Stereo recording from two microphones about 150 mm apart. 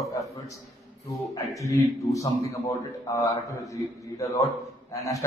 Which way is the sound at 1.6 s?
20° left (ahead or behind).